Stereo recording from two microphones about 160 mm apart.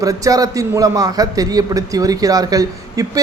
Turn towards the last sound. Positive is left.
turn(degrees=-25)  # may be behind; listen again after turning